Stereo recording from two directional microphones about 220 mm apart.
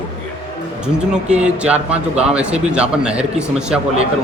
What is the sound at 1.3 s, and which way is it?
A man's voice, 5° right (ahead or behind).